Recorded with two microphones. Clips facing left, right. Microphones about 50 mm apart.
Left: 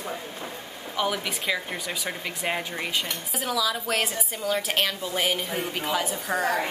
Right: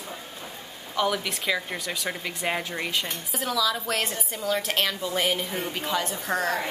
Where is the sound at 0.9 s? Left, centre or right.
Centre.